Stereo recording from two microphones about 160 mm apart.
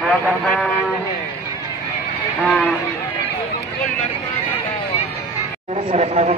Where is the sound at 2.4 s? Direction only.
5° left (ahead or behind).